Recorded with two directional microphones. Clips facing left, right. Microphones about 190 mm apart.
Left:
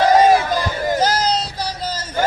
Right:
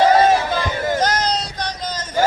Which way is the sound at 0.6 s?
5° left (ahead or behind).